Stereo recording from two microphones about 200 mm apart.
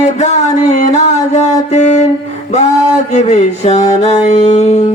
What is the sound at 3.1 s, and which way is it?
Music, 35° left (ahead or behind).